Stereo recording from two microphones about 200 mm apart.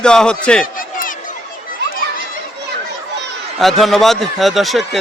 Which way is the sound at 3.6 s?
Centre (ahead or behind).